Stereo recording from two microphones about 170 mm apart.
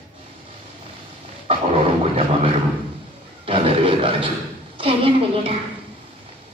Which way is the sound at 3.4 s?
35° right (ahead or behind).